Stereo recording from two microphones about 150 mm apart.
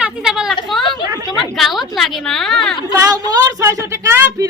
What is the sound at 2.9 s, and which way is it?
A woman's voice, 25° right (ahead or behind).